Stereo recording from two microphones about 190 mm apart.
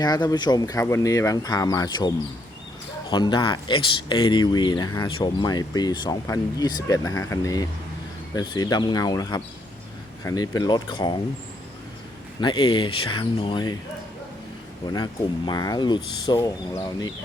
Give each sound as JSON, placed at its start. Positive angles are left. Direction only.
{"t": 0.0, "sound": "speech", "side_deg": 20}
{"t": 12.4, "sound": "speech", "side_deg": 25}
{"t": 14.9, "sound": "speech", "side_deg": 20}